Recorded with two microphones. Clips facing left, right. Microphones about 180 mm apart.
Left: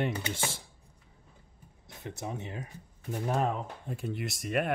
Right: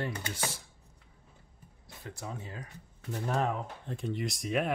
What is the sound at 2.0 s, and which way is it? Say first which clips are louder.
Speech: left 4 dB; 20° left (ahead or behind).